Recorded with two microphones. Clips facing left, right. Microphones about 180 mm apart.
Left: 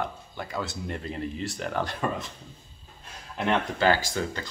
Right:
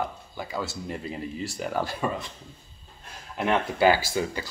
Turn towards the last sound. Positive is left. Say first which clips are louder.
# right 2 dB
turn(degrees=-10)  # may be behind; listen again after turning